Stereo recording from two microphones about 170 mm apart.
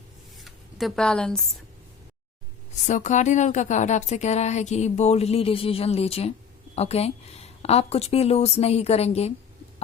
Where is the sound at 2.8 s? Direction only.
45° left (ahead or behind).